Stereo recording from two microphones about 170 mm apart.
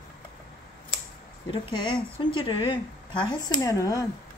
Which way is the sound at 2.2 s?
30° left (ahead or behind).